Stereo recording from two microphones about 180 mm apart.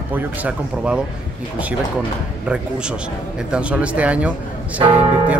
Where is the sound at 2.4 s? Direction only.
5° right (ahead or behind).